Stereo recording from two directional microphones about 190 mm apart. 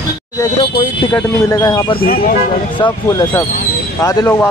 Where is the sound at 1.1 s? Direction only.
15° left (ahead or behind).